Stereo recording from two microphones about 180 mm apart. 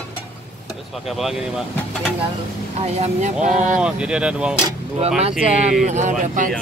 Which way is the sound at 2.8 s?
40° right (ahead or behind).